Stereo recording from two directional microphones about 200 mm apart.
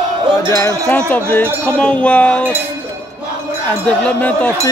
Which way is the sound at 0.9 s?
5° left (ahead or behind).